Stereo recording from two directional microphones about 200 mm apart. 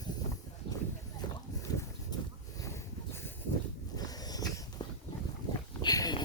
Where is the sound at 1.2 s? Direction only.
20° left (ahead or behind).